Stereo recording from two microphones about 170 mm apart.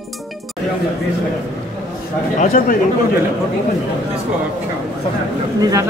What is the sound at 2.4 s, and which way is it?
Speech, 50° left (ahead or behind).